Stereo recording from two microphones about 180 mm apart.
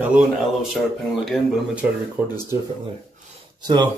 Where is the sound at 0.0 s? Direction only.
5° right (ahead or behind).